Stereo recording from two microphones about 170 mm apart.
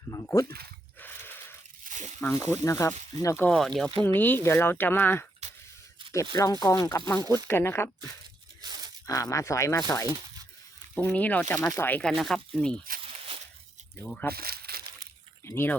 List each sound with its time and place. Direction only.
0.1 s speech: 20° left (ahead or behind)
0.9 s snort: 10° left (ahead or behind)
1.8 s a sound: 45° right (ahead or behind)
2.2 s speech: 15° left (ahead or behind)
5.4 s a sound: 40° right (ahead or behind)
6.3 s speech: 20° left (ahead or behind)
8.6 s tearing: 25° right (ahead or behind)
9.0 s speech: 20° left (ahead or behind)
10.9 s speech: 5° left (ahead or behind)
13.0 s a sound: 30° right (ahead or behind)
14.0 s speech: 10° left (ahead or behind)
14.3 s crumpling: 65° right (ahead or behind)
15.4 s speech: 15° left (ahead or behind)